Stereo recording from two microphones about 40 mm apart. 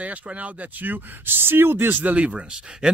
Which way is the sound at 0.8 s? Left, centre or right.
Right.